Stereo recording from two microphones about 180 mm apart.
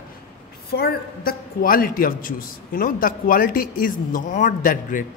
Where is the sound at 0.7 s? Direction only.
60° left (ahead or behind).